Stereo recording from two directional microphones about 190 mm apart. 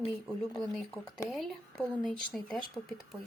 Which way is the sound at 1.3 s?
Centre (ahead or behind).